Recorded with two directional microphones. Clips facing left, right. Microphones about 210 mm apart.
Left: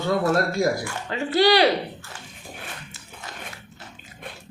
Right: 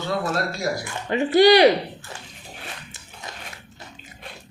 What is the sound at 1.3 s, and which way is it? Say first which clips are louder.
Speech: right 4 dB; 15° right (ahead or behind).